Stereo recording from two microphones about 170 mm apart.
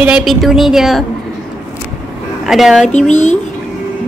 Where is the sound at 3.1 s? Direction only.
45° left (ahead or behind).